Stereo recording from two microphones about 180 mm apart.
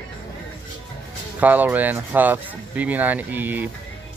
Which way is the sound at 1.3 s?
10° right (ahead or behind).